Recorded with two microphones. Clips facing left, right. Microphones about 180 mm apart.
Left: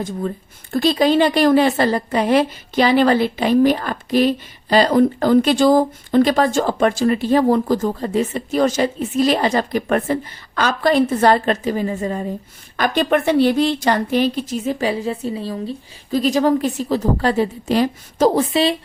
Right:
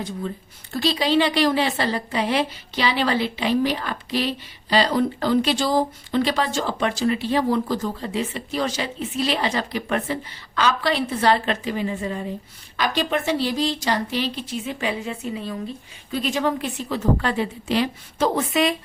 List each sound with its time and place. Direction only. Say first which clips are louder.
0.7 s a woman's voice: left 6 dB; 50° left (ahead or behind)
12.7 s a woman's voice: left 6 dB; 50° left (ahead or behind); by 18.8 s 30° left (ahead or behind)